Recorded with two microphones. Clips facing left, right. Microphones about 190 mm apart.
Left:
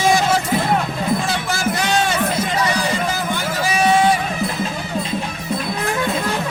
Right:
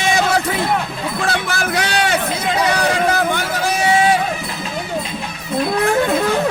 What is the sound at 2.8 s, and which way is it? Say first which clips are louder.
Music: right 5 dB; 65° right (ahead or behind).